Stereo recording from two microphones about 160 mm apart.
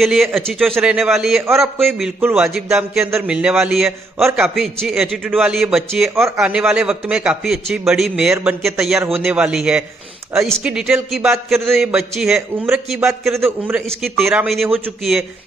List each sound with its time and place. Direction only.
0.0 s a man's voice: centre (ahead or behind)
2.1 s a man's voice: 15° right (ahead or behind)
2.5 s a man's voice: centre (ahead or behind)
3.0 s a man's voice: 15° right (ahead or behind)
6.1 s a man's voice: 15° right (ahead or behind)
6.5 s a man's voice: 5° right (ahead or behind)
14.0 s a man's voice: centre (ahead or behind)